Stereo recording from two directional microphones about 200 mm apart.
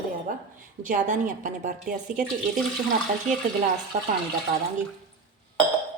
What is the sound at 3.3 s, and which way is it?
Speech, 40° right (ahead or behind).